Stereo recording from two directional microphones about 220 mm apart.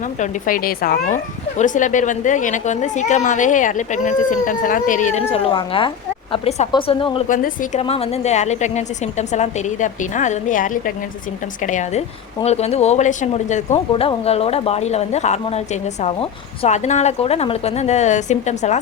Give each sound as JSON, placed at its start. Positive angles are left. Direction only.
{"t": 0.2, "sound": "a woman's voice", "side_deg": 40}
{"t": 7.3, "sound": "a woman's voice", "side_deg": 40}